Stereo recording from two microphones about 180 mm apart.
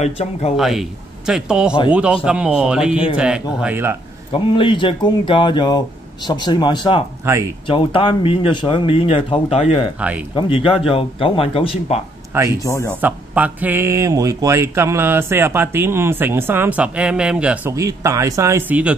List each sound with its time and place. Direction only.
0.0 s speech: 35° left (ahead or behind)
0.6 s a man's voice: centre (ahead or behind)
4.3 s speech: 30° left (ahead or behind)
9.9 s a man's voice: 5° right (ahead or behind)
10.3 s speech: 30° left (ahead or behind)
12.6 s speech: 15° left (ahead or behind)
13.0 s a man's voice: 10° right (ahead or behind)
17.7 s a man's voice: 15° right (ahead or behind)